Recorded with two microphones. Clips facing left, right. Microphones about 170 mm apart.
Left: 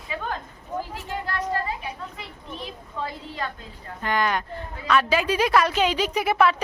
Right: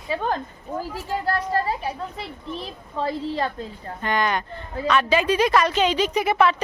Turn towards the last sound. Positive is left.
turn(degrees=5)  # may be behind; listen again after turning